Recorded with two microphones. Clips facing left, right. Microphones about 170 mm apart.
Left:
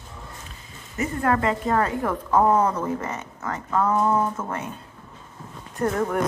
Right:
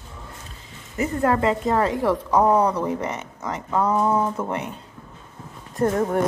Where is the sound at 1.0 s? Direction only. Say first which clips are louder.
Right 2 dB; 25° right (ahead or behind).